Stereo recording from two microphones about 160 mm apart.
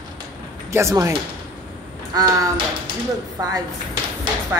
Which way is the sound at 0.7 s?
20° right (ahead or behind).